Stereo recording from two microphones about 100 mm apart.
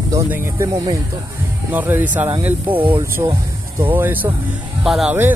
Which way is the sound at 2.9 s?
30° right (ahead or behind).